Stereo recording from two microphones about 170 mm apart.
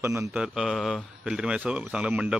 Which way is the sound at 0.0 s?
15° right (ahead or behind).